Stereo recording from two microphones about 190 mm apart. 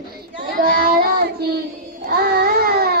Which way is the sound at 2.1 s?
55° right (ahead or behind).